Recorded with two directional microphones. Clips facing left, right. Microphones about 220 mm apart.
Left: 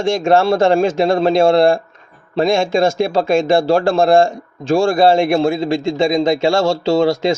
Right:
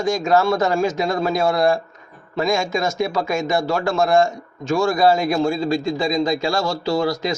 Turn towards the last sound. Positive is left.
turn(degrees=25)  # may be behind; listen again after turning